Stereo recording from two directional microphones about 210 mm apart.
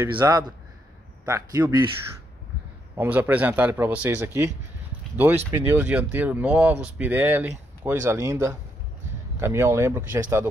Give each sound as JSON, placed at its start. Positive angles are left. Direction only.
{"t": 0.1, "sound": "a man's voice", "side_deg": -20}
{"t": 3.0, "sound": "speech", "side_deg": -10}